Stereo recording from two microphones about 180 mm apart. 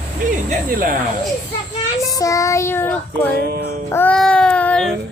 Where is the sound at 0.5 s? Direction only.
50° right (ahead or behind).